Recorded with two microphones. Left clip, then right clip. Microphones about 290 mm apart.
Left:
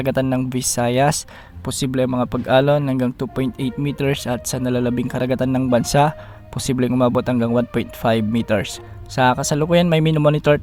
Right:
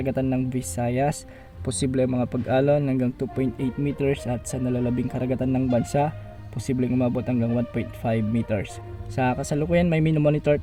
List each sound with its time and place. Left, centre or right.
0.0 s speech: left